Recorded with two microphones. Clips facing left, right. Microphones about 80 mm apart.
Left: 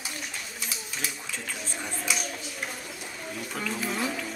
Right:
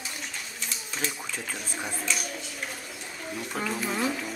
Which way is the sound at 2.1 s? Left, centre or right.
Centre.